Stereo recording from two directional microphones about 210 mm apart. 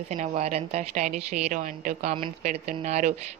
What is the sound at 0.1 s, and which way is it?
A woman's voice, 35° right (ahead or behind).